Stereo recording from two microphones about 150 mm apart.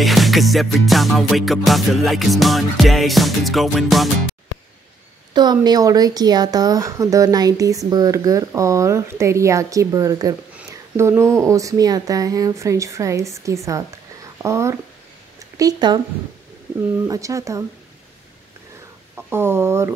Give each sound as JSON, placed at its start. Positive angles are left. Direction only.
{"t": 0.0, "sound": "music", "side_deg": 0}
{"t": 5.3, "sound": "speech", "side_deg": -30}
{"t": 17.1, "sound": "speech", "side_deg": -20}
{"t": 19.1, "sound": "speech", "side_deg": -15}